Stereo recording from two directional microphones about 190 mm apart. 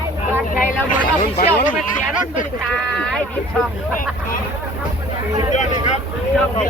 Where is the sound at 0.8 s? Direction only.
50° left (ahead or behind).